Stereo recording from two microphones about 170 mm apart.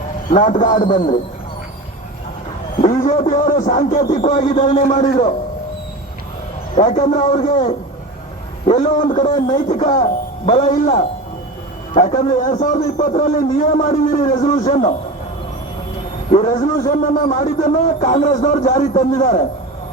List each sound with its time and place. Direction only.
0.3 s a man's voice: 45° left (ahead or behind)
2.8 s a man's voice: 50° left (ahead or behind)
6.7 s a man's voice: 45° left (ahead or behind)
11.9 s a man's voice: 45° left (ahead or behind)
16.3 s a man's voice: 45° left (ahead or behind)